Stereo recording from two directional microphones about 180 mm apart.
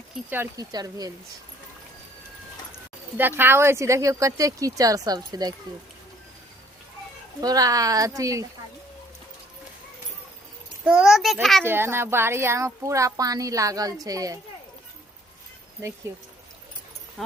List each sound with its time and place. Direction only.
0.3 s speech: 15° right (ahead or behind)
3.2 s speech: 10° right (ahead or behind)
7.4 s speech: 20° right (ahead or behind)
10.8 s a child's voice: 5° right (ahead or behind)
11.6 s speech: 10° right (ahead or behind)
16.1 s speech: 15° right (ahead or behind)
17.2 s a sound: centre (ahead or behind)